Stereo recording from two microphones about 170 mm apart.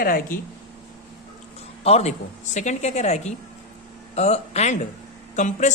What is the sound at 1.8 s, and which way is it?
Speech, 40° left (ahead or behind).